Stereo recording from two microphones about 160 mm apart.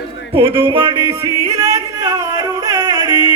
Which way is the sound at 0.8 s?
35° right (ahead or behind).